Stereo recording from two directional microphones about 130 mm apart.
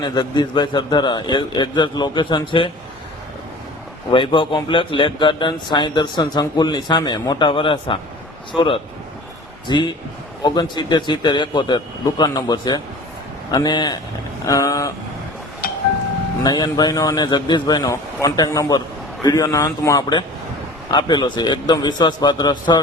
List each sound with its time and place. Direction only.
0.0 s a man's voice: 35° left (ahead or behind)
4.1 s a man's voice: 40° left (ahead or behind)
16.4 s a man's voice: 30° left (ahead or behind)